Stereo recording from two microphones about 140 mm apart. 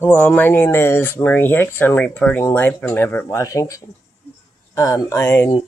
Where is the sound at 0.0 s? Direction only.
10° left (ahead or behind).